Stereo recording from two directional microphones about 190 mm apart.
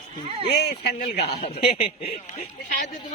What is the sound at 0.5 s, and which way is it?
Speech, 60° left (ahead or behind).